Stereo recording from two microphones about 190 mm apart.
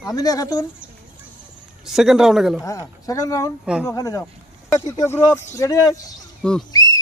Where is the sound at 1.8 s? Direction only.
Centre (ahead or behind).